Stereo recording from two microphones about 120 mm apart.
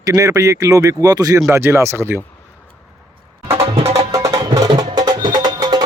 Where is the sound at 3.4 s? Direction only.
25° right (ahead or behind).